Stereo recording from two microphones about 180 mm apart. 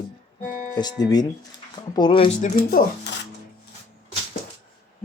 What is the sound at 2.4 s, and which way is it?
Speech, 40° left (ahead or behind).